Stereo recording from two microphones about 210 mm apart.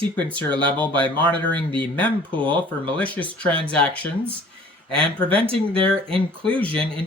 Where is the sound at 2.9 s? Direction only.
5° left (ahead or behind).